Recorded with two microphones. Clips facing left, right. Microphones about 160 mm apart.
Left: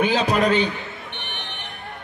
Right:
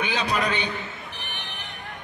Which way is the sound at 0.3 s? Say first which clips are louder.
Left 6 dB; 40° left (ahead or behind).